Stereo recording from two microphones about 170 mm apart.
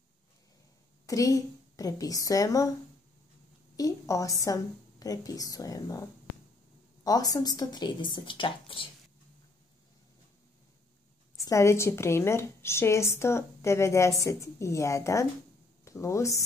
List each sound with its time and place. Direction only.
1.0 s a woman's voice: 20° left (ahead or behind)
3.7 s a woman's voice: 20° left (ahead or behind)
11.4 s a woman's voice: 15° left (ahead or behind)